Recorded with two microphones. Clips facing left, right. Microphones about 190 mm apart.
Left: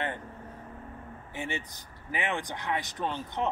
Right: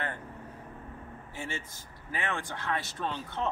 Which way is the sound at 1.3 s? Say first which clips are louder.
Left 4 dB; 20° left (ahead or behind).